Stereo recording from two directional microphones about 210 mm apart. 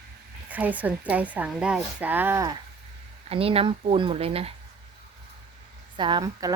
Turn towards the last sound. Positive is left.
turn(degrees=-20)  # may be behind; listen again after turning